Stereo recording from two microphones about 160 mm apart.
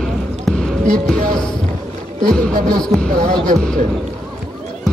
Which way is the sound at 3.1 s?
50° right (ahead or behind).